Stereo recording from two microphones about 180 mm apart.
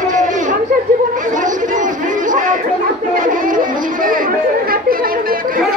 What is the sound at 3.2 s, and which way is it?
Music, 50° right (ahead or behind).